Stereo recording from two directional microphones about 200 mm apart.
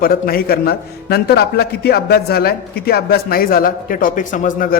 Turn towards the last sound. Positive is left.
turn(degrees=40)  # may be behind; listen again after turning